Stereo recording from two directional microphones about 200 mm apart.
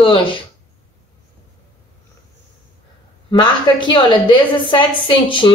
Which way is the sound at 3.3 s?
25° left (ahead or behind).